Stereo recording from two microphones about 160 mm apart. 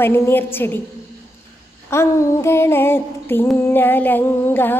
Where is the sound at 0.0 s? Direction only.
15° left (ahead or behind).